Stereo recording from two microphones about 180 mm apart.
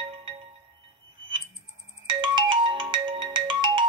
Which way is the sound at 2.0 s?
25° right (ahead or behind).